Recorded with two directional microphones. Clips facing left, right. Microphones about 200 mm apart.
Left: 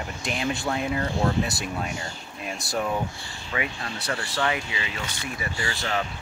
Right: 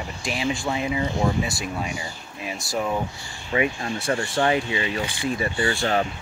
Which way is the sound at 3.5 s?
25° right (ahead or behind).